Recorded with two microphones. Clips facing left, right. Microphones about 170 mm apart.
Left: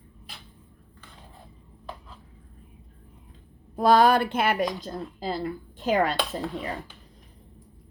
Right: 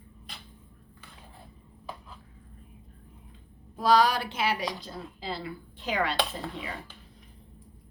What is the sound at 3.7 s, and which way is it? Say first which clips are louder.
Speech: left 4 dB; 55° left (ahead or behind).